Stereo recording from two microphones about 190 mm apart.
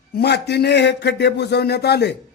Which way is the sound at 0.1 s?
60° left (ahead or behind).